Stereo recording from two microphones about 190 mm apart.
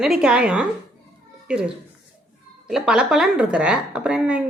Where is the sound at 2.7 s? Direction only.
5° right (ahead or behind).